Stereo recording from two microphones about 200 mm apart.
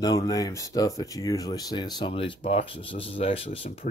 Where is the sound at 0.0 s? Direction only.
20° left (ahead or behind).